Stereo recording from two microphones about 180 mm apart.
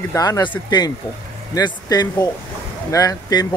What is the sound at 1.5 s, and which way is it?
Speech, 20° left (ahead or behind).